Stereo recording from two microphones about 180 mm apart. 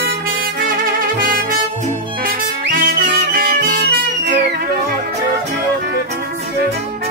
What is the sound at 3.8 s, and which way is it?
Music, 70° right (ahead or behind).